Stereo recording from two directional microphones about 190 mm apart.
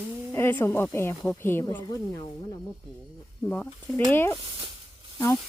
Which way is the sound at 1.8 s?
25° left (ahead or behind).